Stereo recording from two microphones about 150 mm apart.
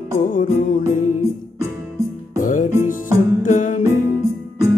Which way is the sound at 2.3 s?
60° left (ahead or behind).